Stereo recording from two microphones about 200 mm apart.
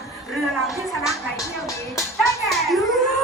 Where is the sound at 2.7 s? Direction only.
Centre (ahead or behind).